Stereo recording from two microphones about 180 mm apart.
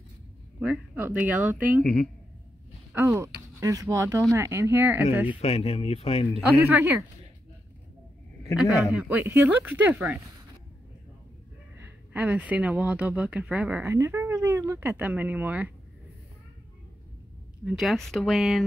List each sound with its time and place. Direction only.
0.6 s speech: 10° right (ahead or behind)
2.9 s speech: 15° right (ahead or behind)
5.4 s speech: 35° left (ahead or behind)
6.4 s speech: 10° right (ahead or behind)
8.9 s speech: 10° right (ahead or behind)
11.8 s speech: 10° right (ahead or behind)
17.6 s speech: centre (ahead or behind)